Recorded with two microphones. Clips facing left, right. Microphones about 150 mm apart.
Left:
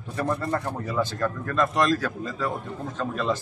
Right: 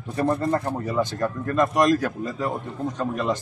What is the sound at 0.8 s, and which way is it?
A man's voice, 20° right (ahead or behind).